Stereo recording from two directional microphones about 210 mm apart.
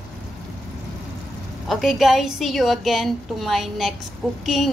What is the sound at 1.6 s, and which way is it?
Speech, centre (ahead or behind).